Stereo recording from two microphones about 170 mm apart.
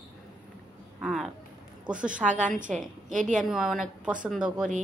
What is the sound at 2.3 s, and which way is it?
A woman's voice, 50° right (ahead or behind).